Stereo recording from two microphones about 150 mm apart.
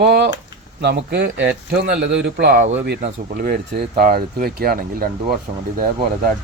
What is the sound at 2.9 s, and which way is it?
Speech, 75° right (ahead or behind).